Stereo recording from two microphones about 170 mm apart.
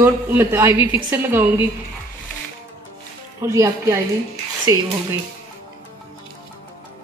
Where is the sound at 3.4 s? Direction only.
15° right (ahead or behind).